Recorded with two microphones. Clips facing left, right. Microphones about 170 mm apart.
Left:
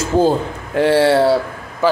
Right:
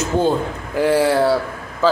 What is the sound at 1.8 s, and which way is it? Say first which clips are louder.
Speech: left 1 dB; 15° left (ahead or behind).